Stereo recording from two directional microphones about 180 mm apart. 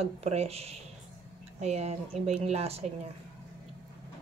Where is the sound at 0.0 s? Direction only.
35° right (ahead or behind).